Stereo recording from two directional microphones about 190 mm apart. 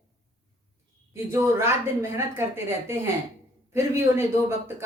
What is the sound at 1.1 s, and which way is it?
A woman's voice, 15° right (ahead or behind).